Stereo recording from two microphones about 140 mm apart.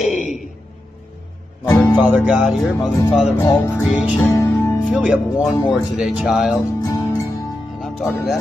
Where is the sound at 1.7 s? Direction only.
25° left (ahead or behind).